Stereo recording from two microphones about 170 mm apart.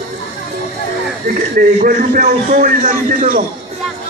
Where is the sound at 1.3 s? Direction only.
55° right (ahead or behind).